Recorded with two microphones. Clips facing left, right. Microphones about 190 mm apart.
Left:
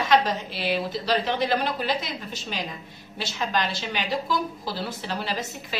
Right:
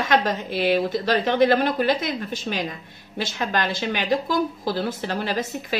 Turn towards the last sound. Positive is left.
turn(degrees=-50)  # may be behind; listen again after turning